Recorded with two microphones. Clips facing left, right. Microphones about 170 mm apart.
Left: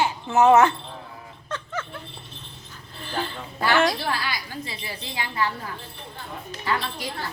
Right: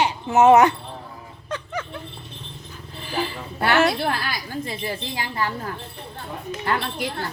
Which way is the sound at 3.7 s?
5° right (ahead or behind).